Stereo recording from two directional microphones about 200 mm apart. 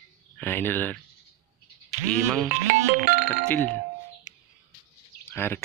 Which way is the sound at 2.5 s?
40° right (ahead or behind).